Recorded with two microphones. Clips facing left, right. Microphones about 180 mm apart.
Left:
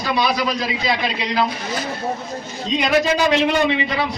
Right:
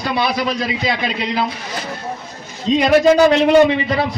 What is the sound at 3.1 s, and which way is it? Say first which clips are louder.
Speech: right 7 dB; 45° right (ahead or behind).